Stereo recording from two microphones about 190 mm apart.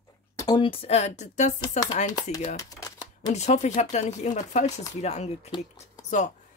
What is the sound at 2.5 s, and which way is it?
Shuffling cards, 20° left (ahead or behind).